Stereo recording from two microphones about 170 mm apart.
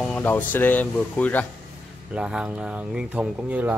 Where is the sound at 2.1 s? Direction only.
5° right (ahead or behind).